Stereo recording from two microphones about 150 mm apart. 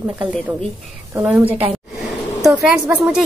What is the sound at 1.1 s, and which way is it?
Speech, 10° right (ahead or behind).